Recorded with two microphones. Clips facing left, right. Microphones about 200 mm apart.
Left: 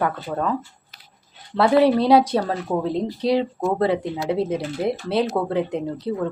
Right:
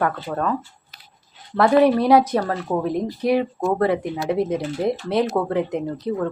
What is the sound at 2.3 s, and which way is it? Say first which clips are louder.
Speech: even; 20° left (ahead or behind).